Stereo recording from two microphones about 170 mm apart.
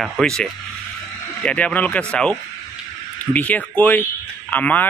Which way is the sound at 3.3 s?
10° left (ahead or behind).